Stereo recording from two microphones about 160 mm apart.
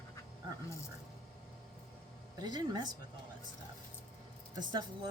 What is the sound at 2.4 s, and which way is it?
Speech, 25° right (ahead or behind).